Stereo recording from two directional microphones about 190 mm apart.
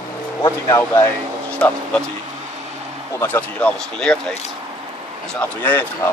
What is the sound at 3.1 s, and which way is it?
Speech, 10° left (ahead or behind).